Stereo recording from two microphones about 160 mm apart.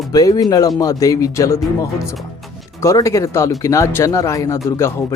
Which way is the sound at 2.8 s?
20° left (ahead or behind).